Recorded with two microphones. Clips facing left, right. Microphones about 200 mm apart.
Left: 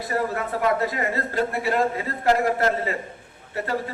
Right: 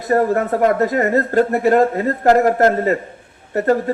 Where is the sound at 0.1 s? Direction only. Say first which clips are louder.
Right 11 dB; 50° right (ahead or behind).